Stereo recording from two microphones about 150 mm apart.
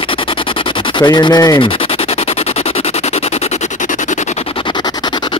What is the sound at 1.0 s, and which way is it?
Speech, 30° left (ahead or behind).